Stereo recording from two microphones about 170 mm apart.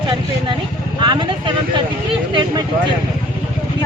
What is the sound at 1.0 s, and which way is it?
Vehicle, 25° right (ahead or behind).